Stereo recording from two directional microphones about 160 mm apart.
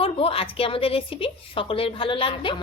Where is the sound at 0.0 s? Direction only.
35° left (ahead or behind).